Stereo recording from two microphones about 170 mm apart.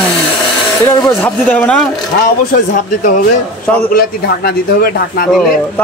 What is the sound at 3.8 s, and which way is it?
A man's voice, 60° left (ahead or behind).